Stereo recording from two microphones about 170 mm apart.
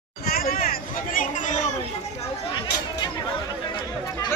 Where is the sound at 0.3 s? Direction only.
60° left (ahead or behind).